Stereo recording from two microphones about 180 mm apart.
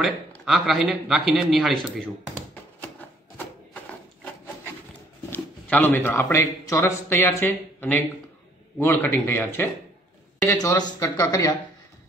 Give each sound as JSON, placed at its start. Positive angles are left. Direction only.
{"t": 0.0, "sound": "speech", "side_deg": 0}
{"t": 5.3, "sound": "speech", "side_deg": 10}